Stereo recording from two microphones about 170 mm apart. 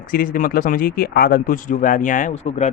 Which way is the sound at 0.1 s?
55° left (ahead or behind).